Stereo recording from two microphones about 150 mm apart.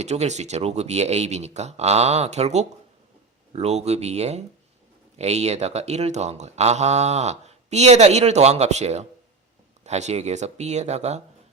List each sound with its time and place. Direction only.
0.0 s speech: 50° right (ahead or behind)